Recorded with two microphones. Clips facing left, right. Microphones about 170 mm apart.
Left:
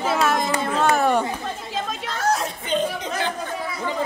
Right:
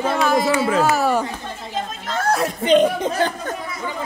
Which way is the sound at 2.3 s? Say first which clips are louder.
Right 8 dB; 70° right (ahead or behind).